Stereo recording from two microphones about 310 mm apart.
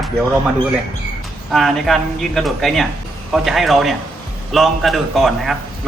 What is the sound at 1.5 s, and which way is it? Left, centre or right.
A man's voice, centre.